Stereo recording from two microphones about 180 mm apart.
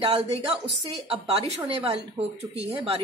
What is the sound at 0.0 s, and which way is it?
A woman's voice, 35° right (ahead or behind).